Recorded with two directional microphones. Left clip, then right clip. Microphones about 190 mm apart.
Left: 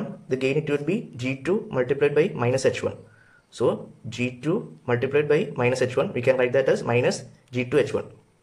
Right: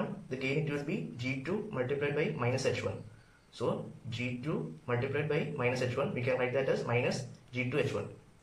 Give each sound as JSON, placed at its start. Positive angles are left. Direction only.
{"t": 0.3, "sound": "speech", "side_deg": 50}